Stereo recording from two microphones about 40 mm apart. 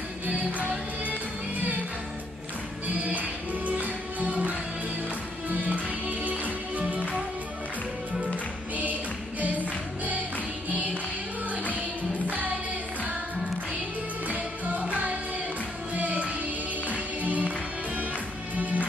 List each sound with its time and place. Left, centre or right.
0.3 s music: right
2.9 s music: right
9.4 s music: right
14.2 s music: right